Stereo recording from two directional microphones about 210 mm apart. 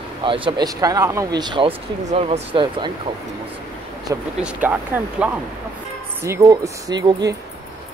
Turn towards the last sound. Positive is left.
turn(degrees=-15)  # may be behind; listen again after turning